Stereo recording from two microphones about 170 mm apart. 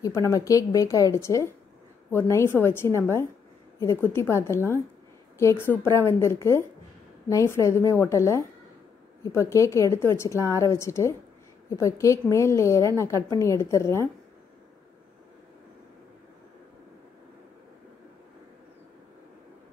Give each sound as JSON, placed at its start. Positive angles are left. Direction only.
{"t": 0.0, "sound": "a woman's voice", "side_deg": 20}